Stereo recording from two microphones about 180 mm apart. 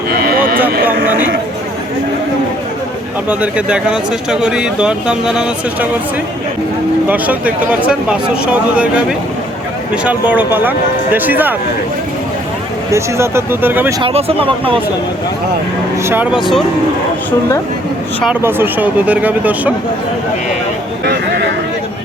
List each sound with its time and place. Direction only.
0.1 s a sound: 55° right (ahead or behind)
1.0 s speech: 10° right (ahead or behind)
3.2 s speech: 5° right (ahead or behind)
7.1 s speech: 10° right (ahead or behind)
12.9 s speech: 15° right (ahead or behind)
14.0 s speech: 35° right (ahead or behind)
16.0 s speech: 10° right (ahead or behind)
18.4 s speech: 10° right (ahead or behind)
21.0 s a sound: 65° right (ahead or behind)